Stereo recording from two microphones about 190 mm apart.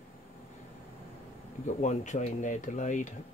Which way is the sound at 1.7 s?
40° left (ahead or behind).